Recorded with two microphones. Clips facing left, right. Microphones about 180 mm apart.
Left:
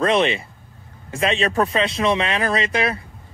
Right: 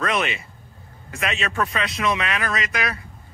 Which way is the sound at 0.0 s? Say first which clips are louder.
Left 6 dB; 30° left (ahead or behind).